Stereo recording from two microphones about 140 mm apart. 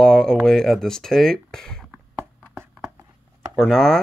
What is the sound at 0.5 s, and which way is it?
Speech, 5° left (ahead or behind).